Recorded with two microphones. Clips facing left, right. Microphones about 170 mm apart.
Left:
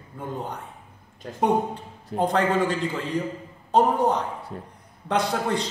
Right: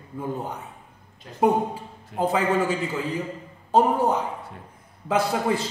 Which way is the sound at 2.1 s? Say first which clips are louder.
Even; 5° right (ahead or behind).